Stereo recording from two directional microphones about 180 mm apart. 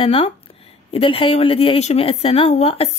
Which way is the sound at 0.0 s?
30° left (ahead or behind).